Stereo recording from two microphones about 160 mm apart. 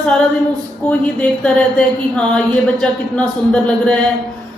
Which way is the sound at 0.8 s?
10° left (ahead or behind).